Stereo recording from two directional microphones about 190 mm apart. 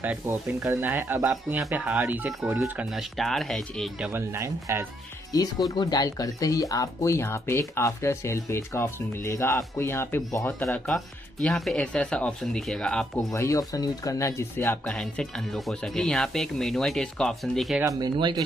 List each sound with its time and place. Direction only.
0.0 s speech: 10° right (ahead or behind)
4.1 s speech: 15° right (ahead or behind)
5.3 s speech: 20° left (ahead or behind); by 17.8 s centre (ahead or behind)
17.8 s speech: 20° right (ahead or behind)